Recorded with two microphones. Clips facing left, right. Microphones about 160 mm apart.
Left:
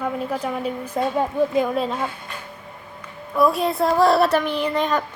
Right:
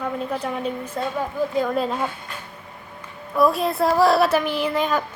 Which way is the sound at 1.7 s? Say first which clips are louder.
Even; centre (ahead or behind).